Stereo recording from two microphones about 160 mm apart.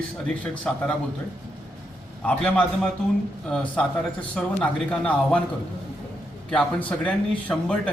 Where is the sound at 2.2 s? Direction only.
10° left (ahead or behind).